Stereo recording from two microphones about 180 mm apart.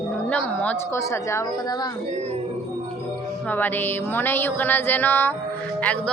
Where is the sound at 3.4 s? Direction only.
10° left (ahead or behind).